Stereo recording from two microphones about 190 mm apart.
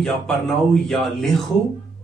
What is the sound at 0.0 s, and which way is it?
A man's voice, centre (ahead or behind).